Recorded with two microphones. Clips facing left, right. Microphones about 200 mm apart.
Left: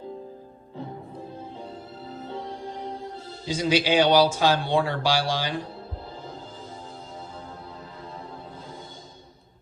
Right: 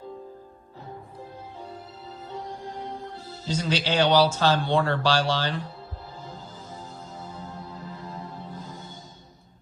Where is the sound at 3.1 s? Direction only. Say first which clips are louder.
Even; 10° left (ahead or behind).